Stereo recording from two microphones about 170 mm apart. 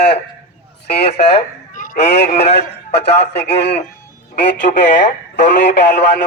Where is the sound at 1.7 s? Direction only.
50° left (ahead or behind).